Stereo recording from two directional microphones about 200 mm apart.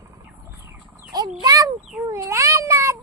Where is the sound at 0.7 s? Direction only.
20° right (ahead or behind).